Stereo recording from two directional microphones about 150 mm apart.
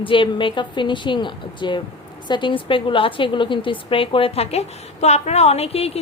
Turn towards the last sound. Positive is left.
turn(degrees=40)  # may be behind; listen again after turning